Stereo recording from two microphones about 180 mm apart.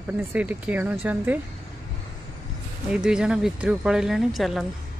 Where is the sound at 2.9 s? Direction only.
5° right (ahead or behind).